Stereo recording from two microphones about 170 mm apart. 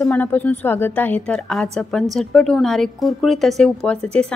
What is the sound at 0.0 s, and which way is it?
A woman's voice, 10° left (ahead or behind).